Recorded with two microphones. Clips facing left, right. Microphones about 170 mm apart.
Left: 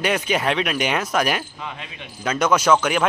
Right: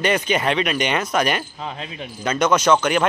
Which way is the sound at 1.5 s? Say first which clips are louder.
Right 3 dB; 30° right (ahead or behind).